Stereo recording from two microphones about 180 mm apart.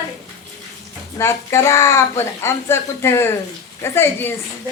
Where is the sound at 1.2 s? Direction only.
15° left (ahead or behind).